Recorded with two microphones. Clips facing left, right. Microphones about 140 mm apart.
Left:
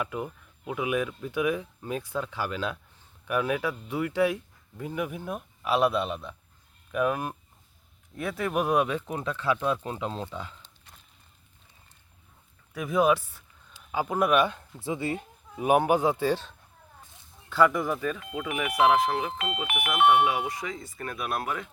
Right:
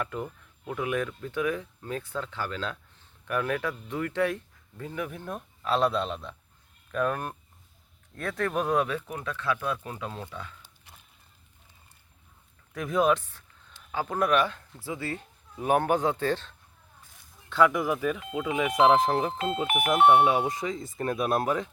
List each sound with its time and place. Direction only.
0.0 s speech: 10° left (ahead or behind); by 10.2 s 25° left (ahead or behind)
12.7 s speech: 5° left (ahead or behind)
17.5 s speech: centre (ahead or behind)
18.2 s speech: 20° right (ahead or behind)